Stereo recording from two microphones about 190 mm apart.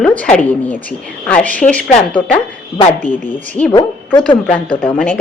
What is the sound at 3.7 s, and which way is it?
A woman's voice, 25° left (ahead or behind).